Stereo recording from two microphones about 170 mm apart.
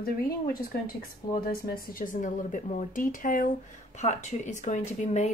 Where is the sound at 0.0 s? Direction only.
60° left (ahead or behind).